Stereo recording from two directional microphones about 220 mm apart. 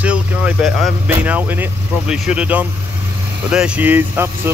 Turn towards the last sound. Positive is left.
turn(degrees=-10)  # may be behind; listen again after turning